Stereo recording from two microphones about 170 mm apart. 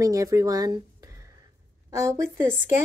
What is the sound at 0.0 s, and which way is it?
A woman's voice, 20° right (ahead or behind).